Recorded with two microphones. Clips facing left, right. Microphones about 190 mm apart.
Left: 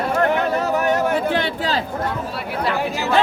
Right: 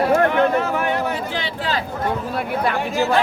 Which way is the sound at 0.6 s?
40° left (ahead or behind).